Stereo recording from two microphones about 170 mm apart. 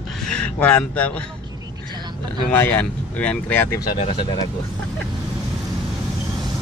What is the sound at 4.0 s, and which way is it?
Speech, 35° left (ahead or behind).